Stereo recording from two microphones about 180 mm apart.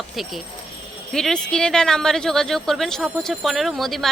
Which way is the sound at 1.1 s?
5° left (ahead or behind).